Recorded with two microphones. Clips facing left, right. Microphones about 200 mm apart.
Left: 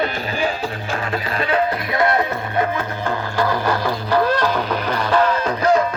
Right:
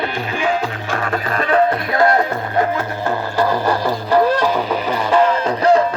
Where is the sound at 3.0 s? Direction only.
10° right (ahead or behind).